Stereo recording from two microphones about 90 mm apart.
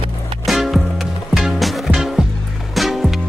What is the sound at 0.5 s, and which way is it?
Music, centre (ahead or behind).